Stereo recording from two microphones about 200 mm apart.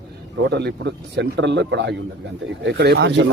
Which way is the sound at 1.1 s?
60° right (ahead or behind).